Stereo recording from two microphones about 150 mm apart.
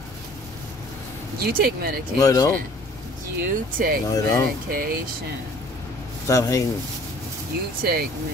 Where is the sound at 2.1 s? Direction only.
25° left (ahead or behind).